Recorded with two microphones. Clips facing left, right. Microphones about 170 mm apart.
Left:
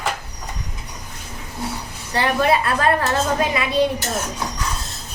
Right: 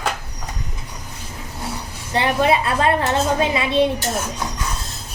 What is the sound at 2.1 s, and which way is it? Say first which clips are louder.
A woman's voice: right 1 dB; 20° right (ahead or behind).